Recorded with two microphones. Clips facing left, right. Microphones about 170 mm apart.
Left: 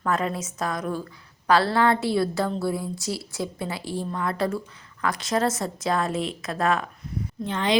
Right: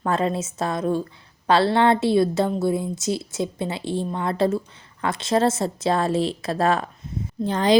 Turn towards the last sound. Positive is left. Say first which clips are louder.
# right 6 dB
turn(degrees=-35)  # may be behind; listen again after turning